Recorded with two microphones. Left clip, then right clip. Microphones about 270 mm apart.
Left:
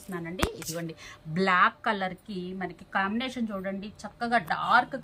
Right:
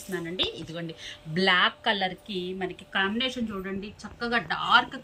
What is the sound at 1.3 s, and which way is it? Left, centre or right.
A woman's voice, centre.